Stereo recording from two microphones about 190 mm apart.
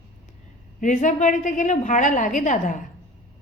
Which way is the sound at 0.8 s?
40° left (ahead or behind).